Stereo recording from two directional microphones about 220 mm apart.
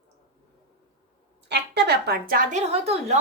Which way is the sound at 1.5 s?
50° right (ahead or behind).